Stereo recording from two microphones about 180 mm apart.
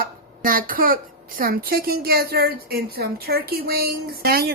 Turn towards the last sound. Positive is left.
turn(degrees=-55)  # may be behind; listen again after turning